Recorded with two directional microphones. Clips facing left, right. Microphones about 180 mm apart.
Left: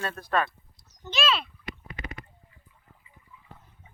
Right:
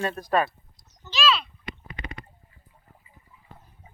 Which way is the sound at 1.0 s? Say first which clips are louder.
Right 2 dB; 50° left (ahead or behind).